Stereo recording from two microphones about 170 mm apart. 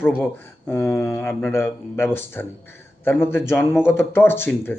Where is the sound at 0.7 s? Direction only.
10° left (ahead or behind).